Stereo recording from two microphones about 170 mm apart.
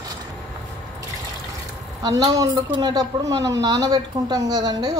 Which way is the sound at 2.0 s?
20° right (ahead or behind).